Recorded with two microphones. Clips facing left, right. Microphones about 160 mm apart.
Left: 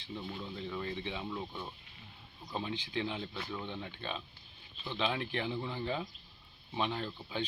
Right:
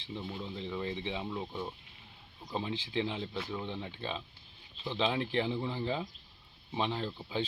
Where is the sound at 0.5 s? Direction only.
25° right (ahead or behind).